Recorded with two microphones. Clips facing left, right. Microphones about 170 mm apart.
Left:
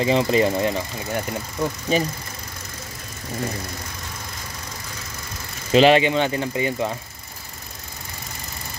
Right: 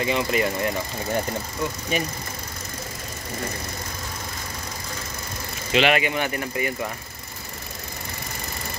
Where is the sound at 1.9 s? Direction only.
35° left (ahead or behind).